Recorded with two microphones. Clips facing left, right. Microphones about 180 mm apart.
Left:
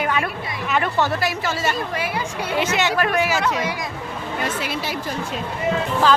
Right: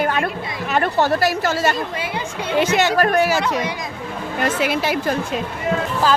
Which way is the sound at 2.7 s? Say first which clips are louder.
Right 4 dB; 40° right (ahead or behind).